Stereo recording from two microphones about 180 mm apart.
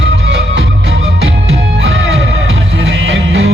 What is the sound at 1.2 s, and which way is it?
Music, 90° right.